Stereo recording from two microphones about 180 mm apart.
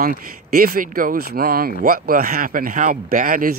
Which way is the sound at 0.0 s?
55° right (ahead or behind).